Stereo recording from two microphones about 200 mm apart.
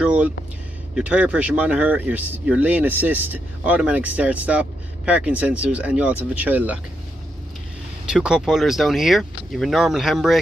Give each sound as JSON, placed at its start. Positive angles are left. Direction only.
{"t": 0.0, "sound": "vehicle", "side_deg": -5}
{"t": 0.9, "sound": "speech", "side_deg": -5}
{"t": 8.1, "sound": "speech", "side_deg": -5}